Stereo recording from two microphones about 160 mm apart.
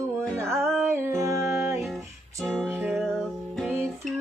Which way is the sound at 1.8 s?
Centre (ahead or behind).